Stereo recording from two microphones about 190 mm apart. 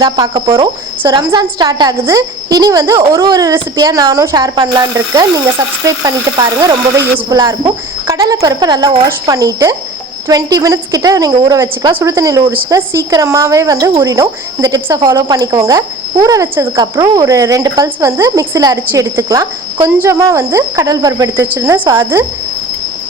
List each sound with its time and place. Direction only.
0.0 s a woman's voice: 20° right (ahead or behind)